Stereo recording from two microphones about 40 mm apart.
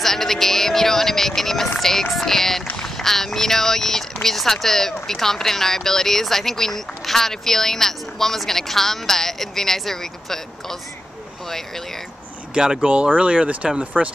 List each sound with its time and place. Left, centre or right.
0.0 s speech: centre
12.5 s speech: centre
12.8 s speech: right